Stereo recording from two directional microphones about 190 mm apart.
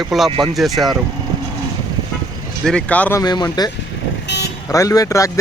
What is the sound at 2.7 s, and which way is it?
Speech, 5° left (ahead or behind).